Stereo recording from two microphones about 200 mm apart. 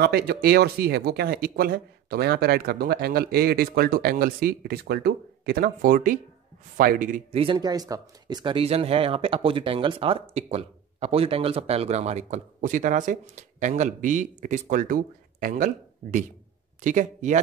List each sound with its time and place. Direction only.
0.0 s speech: 50° right (ahead or behind)
7.3 s speech: 25° right (ahead or behind)